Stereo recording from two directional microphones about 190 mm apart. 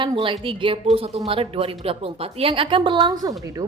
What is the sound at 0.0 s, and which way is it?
A woman's voice, 25° right (ahead or behind).